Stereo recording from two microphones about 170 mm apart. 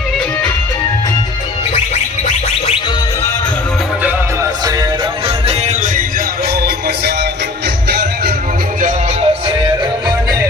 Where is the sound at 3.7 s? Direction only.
5° right (ahead or behind); by 8.4 s 65° right (ahead or behind).